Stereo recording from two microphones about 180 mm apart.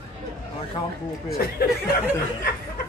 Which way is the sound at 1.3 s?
60° left (ahead or behind).